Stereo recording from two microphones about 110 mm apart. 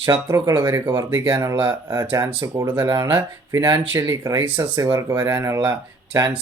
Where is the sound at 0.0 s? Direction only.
30° right (ahead or behind).